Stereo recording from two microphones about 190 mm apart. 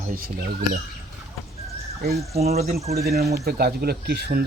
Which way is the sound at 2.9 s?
55° right (ahead or behind).